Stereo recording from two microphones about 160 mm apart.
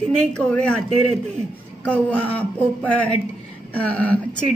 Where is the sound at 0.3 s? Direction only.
5° left (ahead or behind).